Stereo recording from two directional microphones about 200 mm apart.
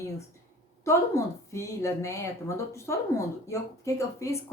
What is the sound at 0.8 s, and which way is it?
Speech, 15° left (ahead or behind).